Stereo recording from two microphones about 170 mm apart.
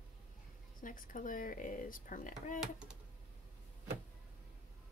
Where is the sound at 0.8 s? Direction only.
50° left (ahead or behind).